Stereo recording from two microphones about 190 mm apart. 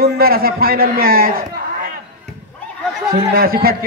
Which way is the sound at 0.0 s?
50° right (ahead or behind).